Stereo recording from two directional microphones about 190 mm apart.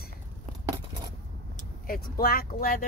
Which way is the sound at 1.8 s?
50° left (ahead or behind).